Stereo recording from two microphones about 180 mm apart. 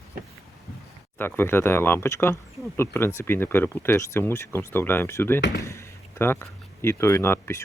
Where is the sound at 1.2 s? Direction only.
10° left (ahead or behind).